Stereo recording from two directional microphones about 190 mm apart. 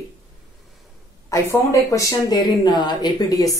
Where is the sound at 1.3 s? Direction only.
15° left (ahead or behind).